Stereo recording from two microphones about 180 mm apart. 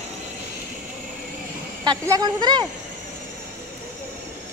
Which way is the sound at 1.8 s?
25° right (ahead or behind).